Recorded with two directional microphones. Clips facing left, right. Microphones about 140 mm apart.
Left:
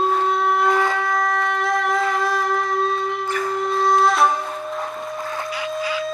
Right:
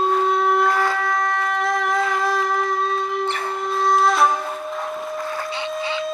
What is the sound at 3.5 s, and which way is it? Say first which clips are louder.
Wind instrument: left 1 dB; centre (ahead or behind).